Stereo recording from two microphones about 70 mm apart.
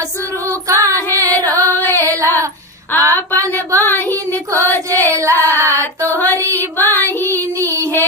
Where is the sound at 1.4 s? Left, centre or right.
Right.